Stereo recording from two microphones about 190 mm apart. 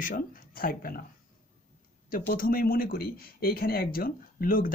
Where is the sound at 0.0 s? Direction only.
45° left (ahead or behind).